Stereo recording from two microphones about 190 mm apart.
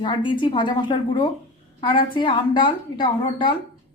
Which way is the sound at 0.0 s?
25° left (ahead or behind).